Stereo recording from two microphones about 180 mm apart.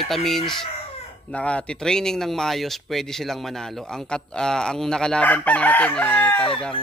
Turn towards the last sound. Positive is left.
turn(degrees=5)  # may be behind; listen again after turning